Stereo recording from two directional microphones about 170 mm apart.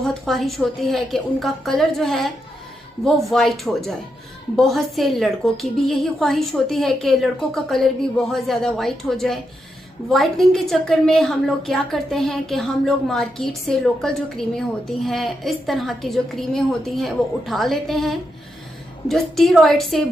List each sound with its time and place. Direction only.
0.0 s a woman's voice: centre (ahead or behind)